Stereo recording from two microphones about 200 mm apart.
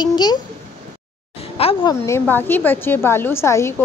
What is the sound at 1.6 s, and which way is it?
Speech, 25° left (ahead or behind).